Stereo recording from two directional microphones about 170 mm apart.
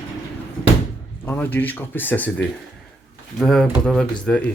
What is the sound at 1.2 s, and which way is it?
Speech, 10° left (ahead or behind).